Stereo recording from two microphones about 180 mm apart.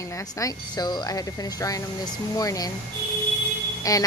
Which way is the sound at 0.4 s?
20° left (ahead or behind).